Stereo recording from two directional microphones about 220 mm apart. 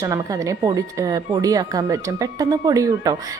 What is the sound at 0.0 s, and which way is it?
Speech, 15° right (ahead or behind).